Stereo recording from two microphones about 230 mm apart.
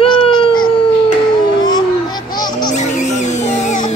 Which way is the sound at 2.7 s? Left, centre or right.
Left.